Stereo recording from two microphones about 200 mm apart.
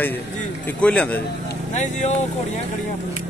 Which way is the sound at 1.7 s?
35° left (ahead or behind).